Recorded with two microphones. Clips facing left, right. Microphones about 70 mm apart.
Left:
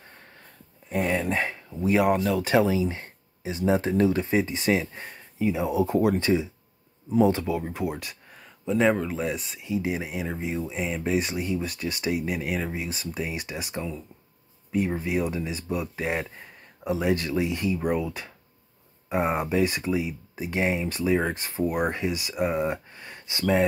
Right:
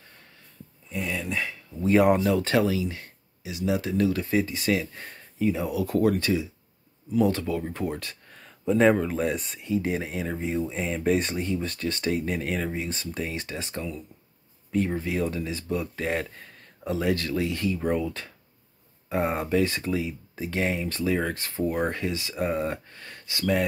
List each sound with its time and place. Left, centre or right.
0.8 s speech: left
1.8 s speech: centre
2.4 s speech: left
5.1 s a sound: centre
5.7 s speech: left